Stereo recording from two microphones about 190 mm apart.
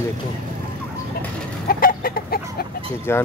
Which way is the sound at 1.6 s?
50° left (ahead or behind).